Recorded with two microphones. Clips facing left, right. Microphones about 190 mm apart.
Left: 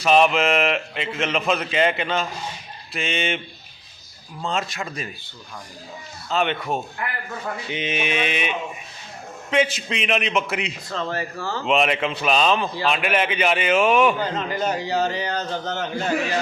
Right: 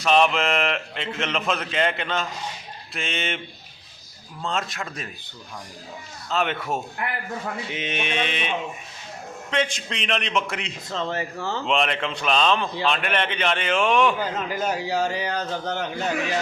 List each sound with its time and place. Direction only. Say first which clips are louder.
0.0 s a man's voice: left 3 dB; 5° left (ahead or behind)
4.4 s a man's voice: left 2 dB; centre (ahead or behind)
6.3 s a man's voice: left 2 dB; centre (ahead or behind)
11.1 s speech: even; 20° right (ahead or behind)
11.6 s a man's voice: left 4 dB; 5° left (ahead or behind)
14.2 s a man's voice: left 2 dB; 5° right (ahead or behind)